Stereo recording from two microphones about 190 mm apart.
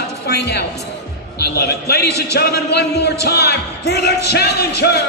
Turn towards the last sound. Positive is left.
turn(degrees=60)  # may be behind; listen again after turning